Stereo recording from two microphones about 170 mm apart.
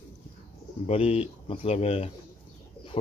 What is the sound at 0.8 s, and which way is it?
Speech, 35° left (ahead or behind).